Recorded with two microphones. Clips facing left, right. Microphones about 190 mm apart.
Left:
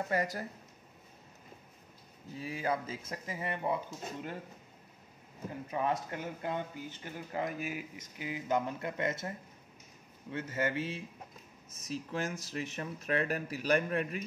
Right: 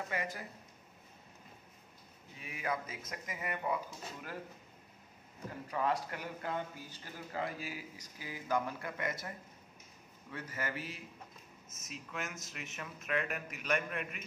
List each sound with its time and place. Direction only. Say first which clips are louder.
0.1 s speech: left 6 dB; 40° left (ahead or behind)
2.3 s speech: left 5 dB; 30° left (ahead or behind)
5.7 s speech: left 1 dB; 20° left (ahead or behind)
10.3 s speech: left 7 dB; 25° left (ahead or behind)